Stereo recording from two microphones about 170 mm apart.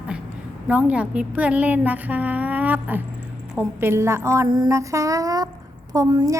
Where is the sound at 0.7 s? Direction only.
10° right (ahead or behind).